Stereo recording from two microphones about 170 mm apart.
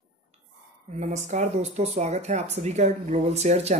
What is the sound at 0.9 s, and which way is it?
Speech, 45° right (ahead or behind).